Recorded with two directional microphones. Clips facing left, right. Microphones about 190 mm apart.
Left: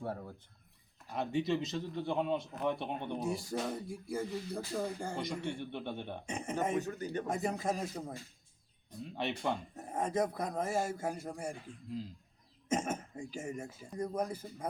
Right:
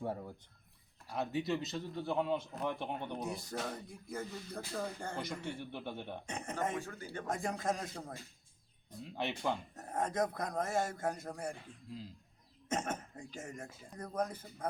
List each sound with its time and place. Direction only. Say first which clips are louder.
0.0 s speech: right 1 dB; 15° right (ahead or behind)
1.1 s a man's voice: left 2 dB; 5° right (ahead or behind)
5.1 s a man's voice: left 3 dB; 5° right (ahead or behind)
6.2 s speech: left 3 dB; 10° left (ahead or behind)
6.7 s speech: left 7 dB; 20° left (ahead or behind)
7.3 s a man's voice: even; 5° left (ahead or behind)
9.7 s speech: left 2 dB; 10° left (ahead or behind)
12.6 s speech: left 3 dB; 10° left (ahead or behind)